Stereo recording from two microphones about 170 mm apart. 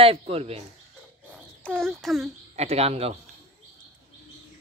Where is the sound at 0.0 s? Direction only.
35° right (ahead or behind).